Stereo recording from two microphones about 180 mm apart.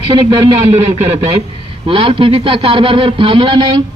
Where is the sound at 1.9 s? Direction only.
30° right (ahead or behind).